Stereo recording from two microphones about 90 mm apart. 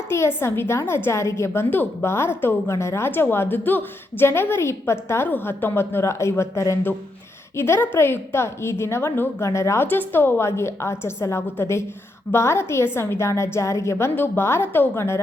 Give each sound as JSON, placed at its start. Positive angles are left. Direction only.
{"t": 0.1, "sound": "a woman's voice", "side_deg": 25}
{"t": 9.8, "sound": "a woman's voice", "side_deg": 20}